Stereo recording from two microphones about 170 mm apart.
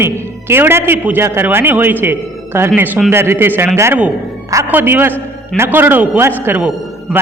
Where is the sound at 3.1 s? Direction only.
15° right (ahead or behind).